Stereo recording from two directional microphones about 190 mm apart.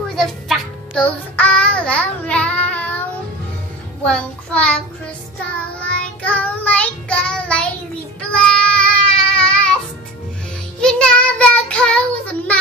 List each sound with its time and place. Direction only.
0.1 s music: centre (ahead or behind)
4.0 s a child's voice: 5° left (ahead or behind)
5.9 s child singing: 5° left (ahead or behind)
10.8 s child singing: 5° left (ahead or behind)